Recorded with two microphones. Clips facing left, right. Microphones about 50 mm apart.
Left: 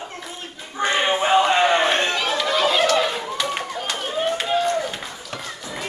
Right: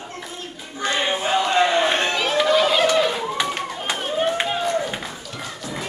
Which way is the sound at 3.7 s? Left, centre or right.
Centre.